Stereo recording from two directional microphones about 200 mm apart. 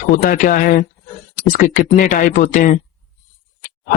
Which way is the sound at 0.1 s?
45° left (ahead or behind).